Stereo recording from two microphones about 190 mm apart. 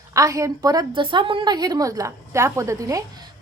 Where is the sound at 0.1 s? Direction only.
15° right (ahead or behind).